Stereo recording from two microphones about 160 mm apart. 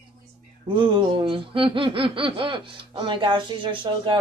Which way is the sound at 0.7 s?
30° right (ahead or behind).